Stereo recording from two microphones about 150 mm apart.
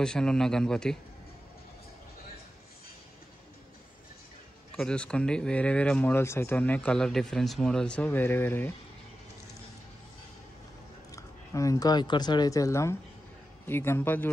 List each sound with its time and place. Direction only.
0.0 s speech: 5° left (ahead or behind)
4.7 s speech: 5° left (ahead or behind)
11.1 s speech: 20° left (ahead or behind)